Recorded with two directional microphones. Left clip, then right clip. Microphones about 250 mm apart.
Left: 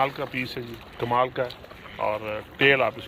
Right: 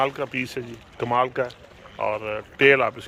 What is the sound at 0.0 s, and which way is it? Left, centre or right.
Speech, right.